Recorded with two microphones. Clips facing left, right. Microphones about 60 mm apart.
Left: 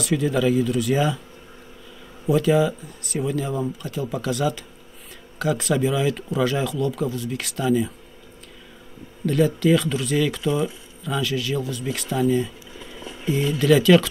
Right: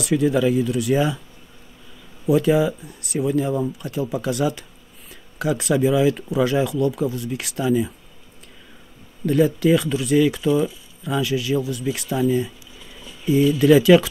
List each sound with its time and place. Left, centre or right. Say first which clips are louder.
0.0 s speech: right 2 dB; centre
2.2 s speech: right 1 dB; centre
9.2 s speech: right 2 dB; centre
12.7 s a sound: left 5 dB; left
13.6 s speech: right 2 dB; centre